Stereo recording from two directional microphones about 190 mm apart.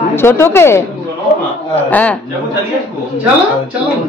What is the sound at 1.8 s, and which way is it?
Speech, 10° left (ahead or behind).